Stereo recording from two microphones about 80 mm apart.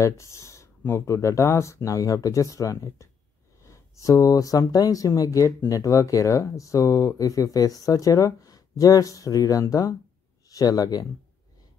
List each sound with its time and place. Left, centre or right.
0.0 s speech: left